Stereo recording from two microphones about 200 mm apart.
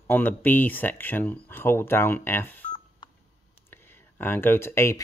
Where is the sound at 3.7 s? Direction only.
10° left (ahead or behind).